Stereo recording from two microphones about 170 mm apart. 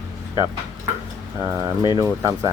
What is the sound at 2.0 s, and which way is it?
Speech, 20° right (ahead or behind).